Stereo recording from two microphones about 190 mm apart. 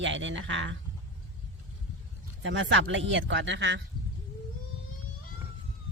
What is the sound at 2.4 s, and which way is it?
Speech, 80° right.